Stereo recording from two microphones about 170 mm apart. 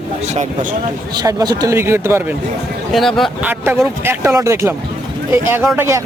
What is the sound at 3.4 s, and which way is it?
Speech, 10° right (ahead or behind).